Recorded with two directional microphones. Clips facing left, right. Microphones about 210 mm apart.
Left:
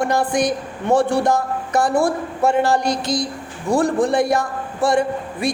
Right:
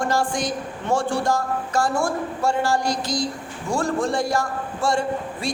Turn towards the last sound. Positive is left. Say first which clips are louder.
# left 4 dB
turn(degrees=20)  # may be behind; listen again after turning